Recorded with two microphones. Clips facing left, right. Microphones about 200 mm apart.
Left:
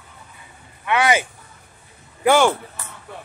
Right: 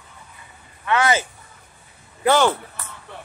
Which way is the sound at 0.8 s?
15° left (ahead or behind).